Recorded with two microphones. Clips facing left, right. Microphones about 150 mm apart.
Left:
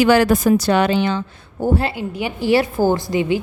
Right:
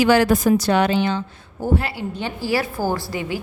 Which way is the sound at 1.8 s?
25° left (ahead or behind).